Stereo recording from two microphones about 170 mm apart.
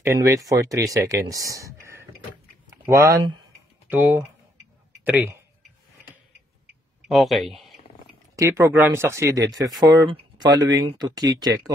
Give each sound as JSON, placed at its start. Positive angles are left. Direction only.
{"t": 0.5, "sound": "speech", "side_deg": -20}
{"t": 2.7, "sound": "a sound", "side_deg": -15}
{"t": 3.9, "sound": "speech", "side_deg": -10}
{"t": 7.1, "sound": "speech", "side_deg": 0}
{"t": 8.4, "sound": "speech", "side_deg": -15}